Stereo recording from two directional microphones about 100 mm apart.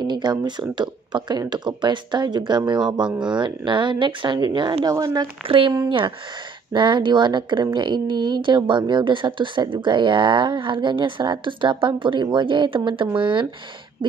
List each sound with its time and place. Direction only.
0.0 s a woman's voice: 45° right (ahead or behind)
4.8 s speech: 40° right (ahead or behind)
5.9 s a woman's voice: 55° right (ahead or behind)